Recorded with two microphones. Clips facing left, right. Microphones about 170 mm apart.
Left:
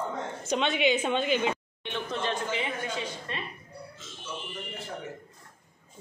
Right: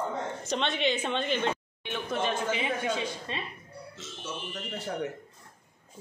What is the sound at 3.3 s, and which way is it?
Speech, 20° right (ahead or behind).